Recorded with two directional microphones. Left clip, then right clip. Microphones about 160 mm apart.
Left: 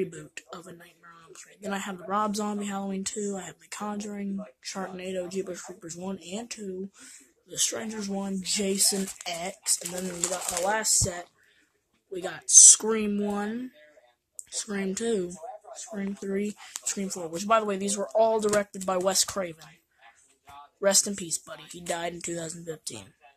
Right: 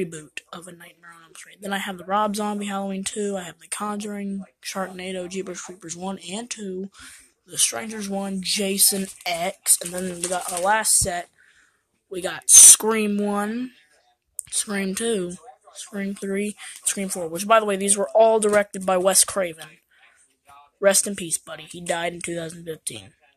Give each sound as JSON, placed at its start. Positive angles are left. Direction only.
{"t": 0.0, "sound": "speech", "side_deg": -30}
{"t": 7.4, "sound": "speech", "side_deg": -20}
{"t": 20.8, "sound": "speech", "side_deg": -15}